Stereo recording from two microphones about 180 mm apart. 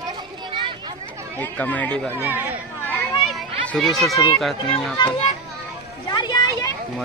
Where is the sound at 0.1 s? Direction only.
25° right (ahead or behind).